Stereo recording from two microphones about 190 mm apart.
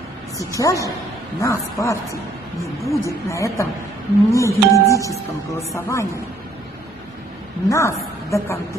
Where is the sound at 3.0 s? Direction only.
15° left (ahead or behind).